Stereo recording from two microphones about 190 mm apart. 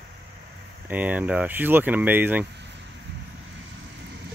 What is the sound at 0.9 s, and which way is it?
Speech, 10° right (ahead or behind).